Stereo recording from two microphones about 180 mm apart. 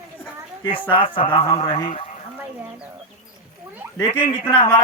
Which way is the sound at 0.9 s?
30° left (ahead or behind).